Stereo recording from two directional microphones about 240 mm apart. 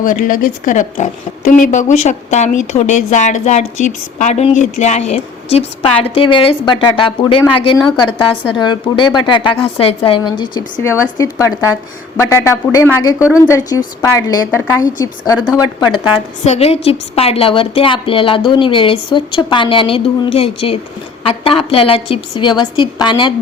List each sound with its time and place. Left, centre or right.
0.0 s a woman's voice: left; by 23.3 s centre